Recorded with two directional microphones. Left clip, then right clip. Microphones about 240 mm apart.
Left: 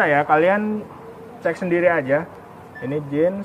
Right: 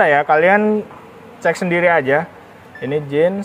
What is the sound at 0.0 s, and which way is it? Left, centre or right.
Speech, right.